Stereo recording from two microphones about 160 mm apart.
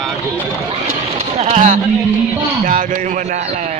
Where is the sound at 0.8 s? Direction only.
45° right (ahead or behind).